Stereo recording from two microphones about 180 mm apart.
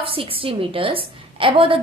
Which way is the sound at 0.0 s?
30° right (ahead or behind).